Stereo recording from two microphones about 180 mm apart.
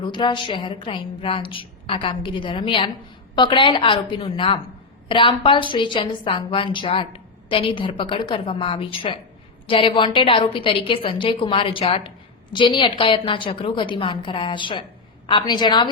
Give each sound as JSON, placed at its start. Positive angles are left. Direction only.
{"t": 0.0, "sound": "a woman's voice", "side_deg": 25}